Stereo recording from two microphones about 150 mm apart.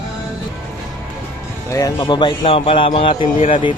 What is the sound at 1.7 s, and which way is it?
Speech, 20° left (ahead or behind).